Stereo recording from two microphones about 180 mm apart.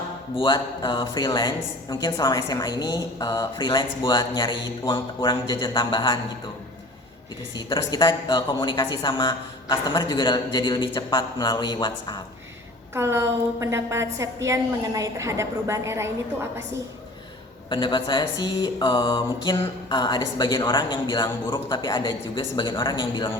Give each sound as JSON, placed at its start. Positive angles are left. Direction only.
{"t": 0.3, "sound": "a woman's voice", "side_deg": 25}
{"t": 7.5, "sound": "a woman's voice", "side_deg": 25}
{"t": 12.9, "sound": "a woman's voice", "side_deg": -15}
{"t": 17.7, "sound": "a woman's voice", "side_deg": 25}